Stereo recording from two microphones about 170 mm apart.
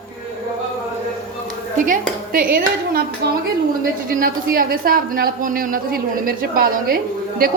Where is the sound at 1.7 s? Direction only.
50° right (ahead or behind).